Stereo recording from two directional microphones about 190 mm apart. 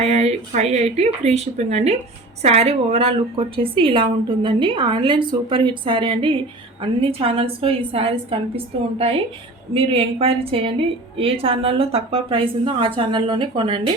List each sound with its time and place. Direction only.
0.0 s a woman's voice: 35° right (ahead or behind)